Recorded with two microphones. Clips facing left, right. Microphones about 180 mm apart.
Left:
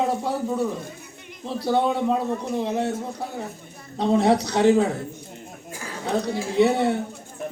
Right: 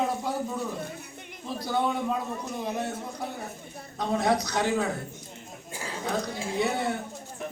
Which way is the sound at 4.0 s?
30° left (ahead or behind).